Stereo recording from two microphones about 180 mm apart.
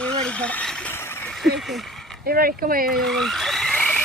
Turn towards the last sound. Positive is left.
turn(degrees=5)  # may be behind; listen again after turning